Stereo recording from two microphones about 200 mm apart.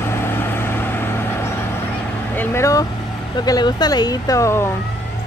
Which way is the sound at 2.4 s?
15° left (ahead or behind).